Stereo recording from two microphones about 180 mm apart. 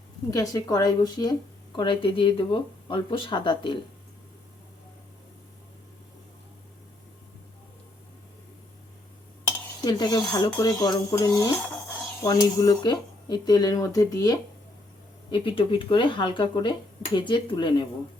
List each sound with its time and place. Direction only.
0.3 s speech: 20° left (ahead or behind)
9.8 s speech: 20° left (ahead or behind)